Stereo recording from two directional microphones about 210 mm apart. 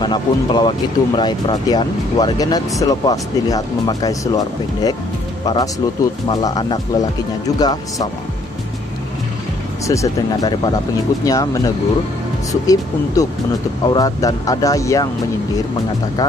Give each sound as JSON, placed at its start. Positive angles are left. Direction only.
{"t": 0.0, "sound": "speech", "side_deg": 20}
{"t": 9.8, "sound": "speech", "side_deg": 15}